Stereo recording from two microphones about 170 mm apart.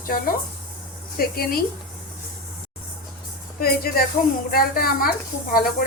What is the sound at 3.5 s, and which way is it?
Speech, 65° left (ahead or behind).